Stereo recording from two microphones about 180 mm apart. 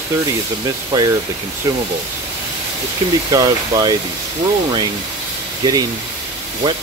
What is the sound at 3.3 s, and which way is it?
Speech, 20° right (ahead or behind).